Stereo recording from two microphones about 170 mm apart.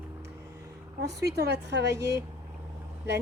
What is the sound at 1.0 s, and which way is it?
Speech, 75° right (ahead or behind).